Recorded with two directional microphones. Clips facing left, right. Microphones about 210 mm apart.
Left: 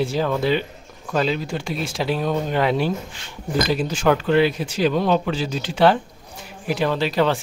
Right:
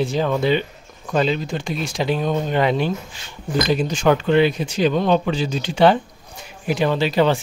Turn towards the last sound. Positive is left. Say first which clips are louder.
# right 2 dB
turn(degrees=0)  # may be behind; listen again after turning